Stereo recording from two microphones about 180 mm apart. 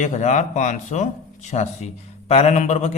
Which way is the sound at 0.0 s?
40° left (ahead or behind).